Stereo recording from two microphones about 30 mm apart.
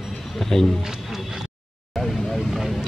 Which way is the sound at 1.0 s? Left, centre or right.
Centre.